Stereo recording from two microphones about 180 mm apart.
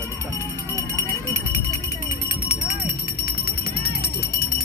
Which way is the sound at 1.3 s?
20° left (ahead or behind).